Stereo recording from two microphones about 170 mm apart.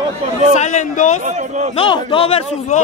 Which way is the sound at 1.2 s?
45° right (ahead or behind).